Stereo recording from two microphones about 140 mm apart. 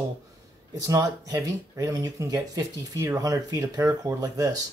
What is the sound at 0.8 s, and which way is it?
Speech, 25° right (ahead or behind).